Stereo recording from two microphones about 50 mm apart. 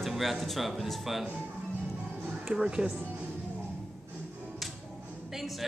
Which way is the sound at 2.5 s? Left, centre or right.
Centre.